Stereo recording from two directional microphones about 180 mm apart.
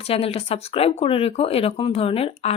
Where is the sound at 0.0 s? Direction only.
35° left (ahead or behind).